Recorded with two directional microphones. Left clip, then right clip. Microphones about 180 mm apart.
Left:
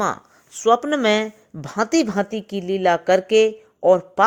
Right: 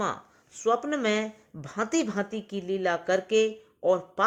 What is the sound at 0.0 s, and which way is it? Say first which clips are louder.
Speech: left 8 dB; 40° left (ahead or behind).